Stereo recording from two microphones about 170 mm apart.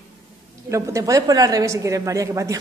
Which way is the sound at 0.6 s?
20° right (ahead or behind).